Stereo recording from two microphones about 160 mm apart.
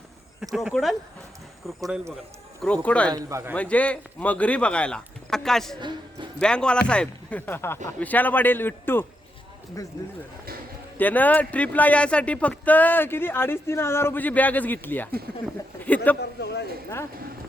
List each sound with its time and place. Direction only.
0.5 s speech: centre (ahead or behind)
3.1 s speech: 20° right (ahead or behind)
3.5 s speech: 10° left (ahead or behind)
10.9 s speech: 10° left (ahead or behind)
16.4 s speech: 90° left